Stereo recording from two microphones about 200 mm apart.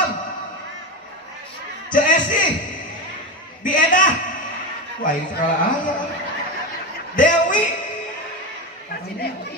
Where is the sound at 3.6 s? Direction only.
40° left (ahead or behind).